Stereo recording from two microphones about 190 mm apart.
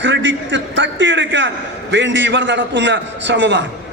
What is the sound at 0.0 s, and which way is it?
A man's voice, 75° right (ahead or behind).